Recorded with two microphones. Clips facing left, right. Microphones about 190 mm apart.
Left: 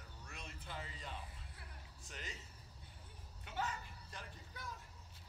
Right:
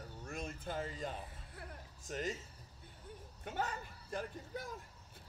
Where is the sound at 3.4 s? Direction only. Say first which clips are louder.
Right 3 dB; 50° right (ahead or behind).